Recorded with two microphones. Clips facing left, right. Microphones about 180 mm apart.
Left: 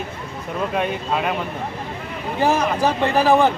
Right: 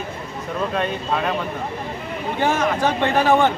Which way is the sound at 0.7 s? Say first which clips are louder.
Left 2 dB; 10° left (ahead or behind).